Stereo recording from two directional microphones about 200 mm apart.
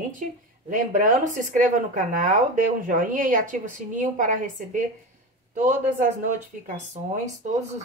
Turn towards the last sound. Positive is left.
turn(degrees=-40)  # may be behind; listen again after turning